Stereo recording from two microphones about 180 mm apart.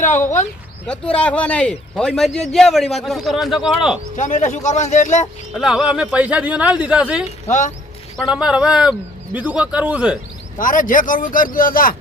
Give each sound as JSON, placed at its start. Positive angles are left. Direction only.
{"t": 0.9, "sound": "a man's voice", "side_deg": 5}
{"t": 4.2, "sound": "a man's voice", "side_deg": 45}
{"t": 5.5, "sound": "speech", "side_deg": 0}
{"t": 8.3, "sound": "a man's voice", "side_deg": -5}
{"t": 10.6, "sound": "a man's voice", "side_deg": 50}